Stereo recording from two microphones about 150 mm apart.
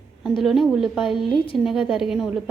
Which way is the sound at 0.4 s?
Centre (ahead or behind).